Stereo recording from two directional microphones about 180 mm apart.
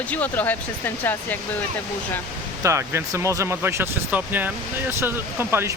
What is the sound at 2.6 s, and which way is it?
Speech, 15° right (ahead or behind).